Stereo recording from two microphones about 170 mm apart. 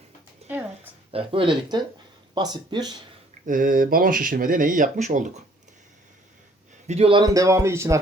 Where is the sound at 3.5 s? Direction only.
55° right (ahead or behind).